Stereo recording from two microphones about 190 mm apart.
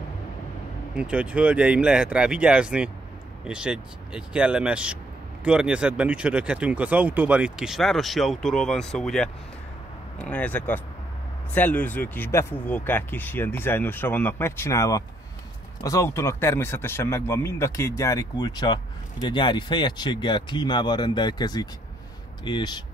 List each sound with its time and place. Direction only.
0.9 s speech: 5° right (ahead or behind); by 22.8 s 20° left (ahead or behind)